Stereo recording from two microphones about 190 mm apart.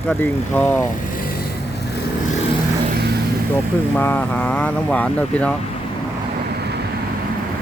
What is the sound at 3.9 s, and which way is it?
Speech, 10° left (ahead or behind).